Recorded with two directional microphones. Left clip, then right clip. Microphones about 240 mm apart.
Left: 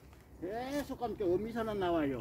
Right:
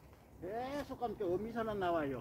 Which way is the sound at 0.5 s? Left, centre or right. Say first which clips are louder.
Left 3 dB; left.